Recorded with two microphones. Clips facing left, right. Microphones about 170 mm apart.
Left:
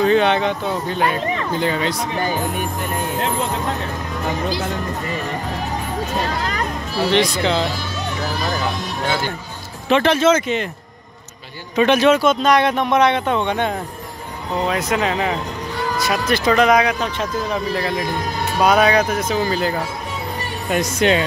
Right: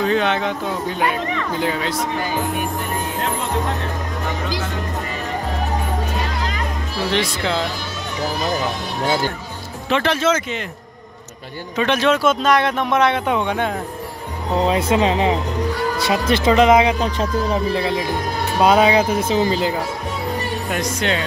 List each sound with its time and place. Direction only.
0.0 s speech: centre (ahead or behind)
7.1 s speech: 5° right (ahead or behind)
9.8 s speech: 20° left (ahead or behind)
11.7 s speech: 15° left (ahead or behind)
12.2 s speech: 5° right (ahead or behind)
14.6 s speech: 30° right (ahead or behind)
20.7 s speech: 10° left (ahead or behind)